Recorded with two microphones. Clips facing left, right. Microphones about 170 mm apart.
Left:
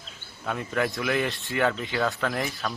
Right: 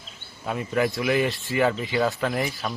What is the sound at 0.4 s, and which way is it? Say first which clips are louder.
Speech: right 3 dB; 10° right (ahead or behind).